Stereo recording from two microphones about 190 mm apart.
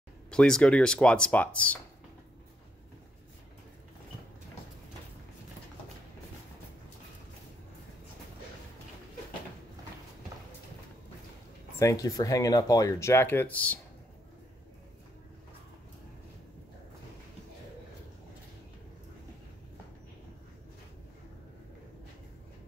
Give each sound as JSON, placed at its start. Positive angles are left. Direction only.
{"t": 0.3, "sound": "speech", "side_deg": 5}
{"t": 11.8, "sound": "speech", "side_deg": 15}